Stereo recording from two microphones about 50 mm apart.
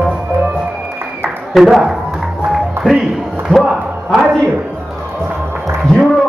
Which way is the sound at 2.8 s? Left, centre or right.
Centre.